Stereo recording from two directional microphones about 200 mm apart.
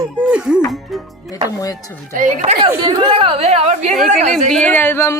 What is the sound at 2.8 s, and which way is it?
A woman's voice, 25° right (ahead or behind).